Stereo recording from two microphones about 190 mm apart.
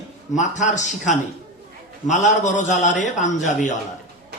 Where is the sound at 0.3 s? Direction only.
40° left (ahead or behind).